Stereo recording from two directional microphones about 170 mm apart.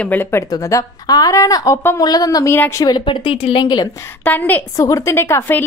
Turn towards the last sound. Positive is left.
turn(degrees=15)  # may be behind; listen again after turning